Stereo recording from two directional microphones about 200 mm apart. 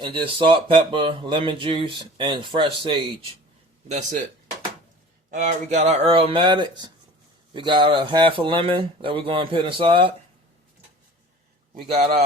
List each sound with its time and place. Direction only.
0.0 s speech: 25° right (ahead or behind)
3.8 s speech: 35° right (ahead or behind)
5.3 s speech: 40° right (ahead or behind)